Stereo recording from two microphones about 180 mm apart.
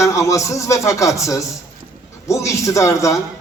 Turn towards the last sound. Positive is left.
turn(degrees=15)  # may be behind; listen again after turning